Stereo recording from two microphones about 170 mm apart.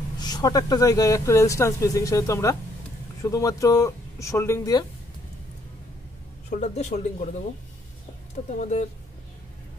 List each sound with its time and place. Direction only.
0.2 s speech: 25° left (ahead or behind)
6.5 s a woman's voice: 40° left (ahead or behind)
8.5 s a woman's voice: 45° left (ahead or behind)